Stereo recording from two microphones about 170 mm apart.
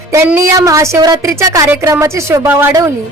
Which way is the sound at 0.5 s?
20° right (ahead or behind).